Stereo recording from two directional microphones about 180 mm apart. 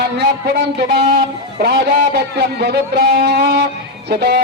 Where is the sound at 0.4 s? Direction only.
70° right (ahead or behind).